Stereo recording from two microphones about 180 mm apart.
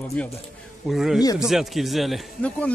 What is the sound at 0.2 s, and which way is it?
A man's voice, 10° left (ahead or behind).